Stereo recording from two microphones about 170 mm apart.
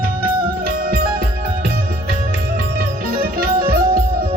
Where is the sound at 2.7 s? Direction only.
60° right (ahead or behind).